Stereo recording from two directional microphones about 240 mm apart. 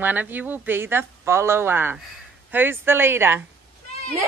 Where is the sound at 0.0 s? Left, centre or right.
Centre.